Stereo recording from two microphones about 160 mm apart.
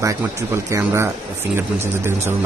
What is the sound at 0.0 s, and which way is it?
Speech, 15° right (ahead or behind).